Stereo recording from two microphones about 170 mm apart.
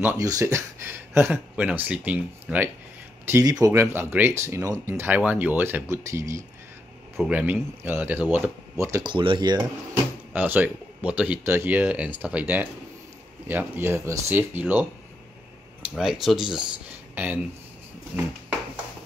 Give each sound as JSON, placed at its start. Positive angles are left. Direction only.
{"t": 0.0, "sound": "speech", "side_deg": -15}
{"t": 9.0, "sound": "speech", "side_deg": -30}
{"t": 10.3, "sound": "speech", "side_deg": -10}